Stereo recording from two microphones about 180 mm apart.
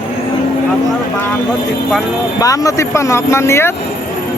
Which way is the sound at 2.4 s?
20° left (ahead or behind).